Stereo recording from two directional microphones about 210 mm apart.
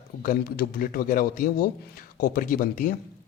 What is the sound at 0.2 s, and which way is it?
A man's voice, 40° left (ahead or behind).